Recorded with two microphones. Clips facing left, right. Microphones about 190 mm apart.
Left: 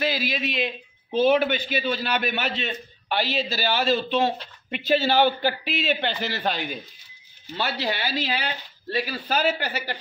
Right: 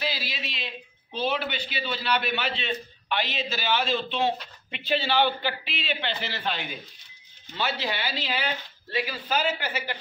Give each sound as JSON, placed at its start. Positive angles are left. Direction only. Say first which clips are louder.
{"t": 0.0, "sound": "a man's voice", "louder": "left 7 dB", "side_deg": 50}